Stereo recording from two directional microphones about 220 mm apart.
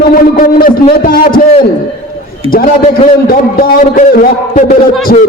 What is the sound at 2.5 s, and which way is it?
A man's voice, 40° left (ahead or behind).